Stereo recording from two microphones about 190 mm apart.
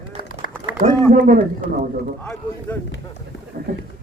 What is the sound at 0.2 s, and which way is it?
Run, 50° left (ahead or behind).